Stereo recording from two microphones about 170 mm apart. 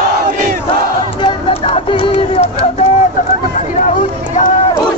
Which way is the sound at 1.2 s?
30° left (ahead or behind).